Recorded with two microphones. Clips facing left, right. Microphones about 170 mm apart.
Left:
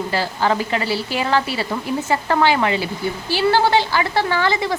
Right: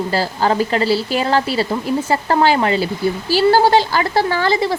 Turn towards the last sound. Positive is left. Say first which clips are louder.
# right 3 dB
turn(degrees=-35)  # may be behind; listen again after turning